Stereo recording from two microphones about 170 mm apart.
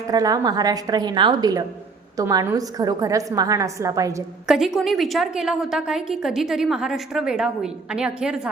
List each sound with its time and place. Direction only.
0.1 s a woman's voice: 20° right (ahead or behind)
4.4 s a woman's voice: centre (ahead or behind)